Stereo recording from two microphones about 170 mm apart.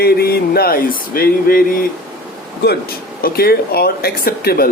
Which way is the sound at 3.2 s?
65° left (ahead or behind).